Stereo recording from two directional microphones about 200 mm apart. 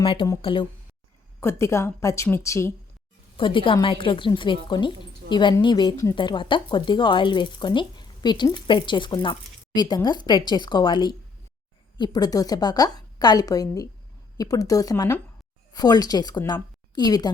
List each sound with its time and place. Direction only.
0.0 s a woman's voice: 25° left (ahead or behind)
1.4 s a woman's voice: 15° left (ahead or behind)
3.3 s a woman's voice: 25° left (ahead or behind)